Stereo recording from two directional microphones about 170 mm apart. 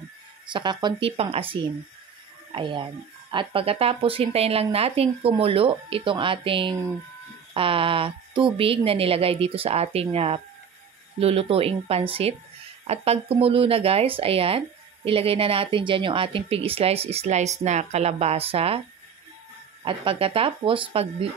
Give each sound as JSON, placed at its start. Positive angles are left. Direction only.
{"t": 0.5, "sound": "speech", "side_deg": -25}
{"t": 19.8, "sound": "speech", "side_deg": -30}